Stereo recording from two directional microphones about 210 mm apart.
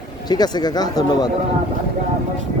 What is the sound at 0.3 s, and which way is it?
Speech, 20° left (ahead or behind).